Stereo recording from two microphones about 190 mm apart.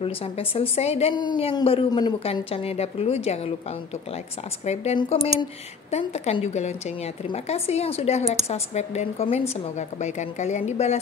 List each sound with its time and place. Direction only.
0.0 s a woman's voice: 30° left (ahead or behind)
4.6 s a woman's voice: 35° left (ahead or behind)